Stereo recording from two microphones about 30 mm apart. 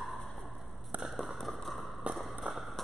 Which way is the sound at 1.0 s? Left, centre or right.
Right.